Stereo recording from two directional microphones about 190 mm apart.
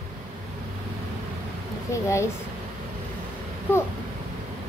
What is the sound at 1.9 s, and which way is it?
Speech, 15° left (ahead or behind).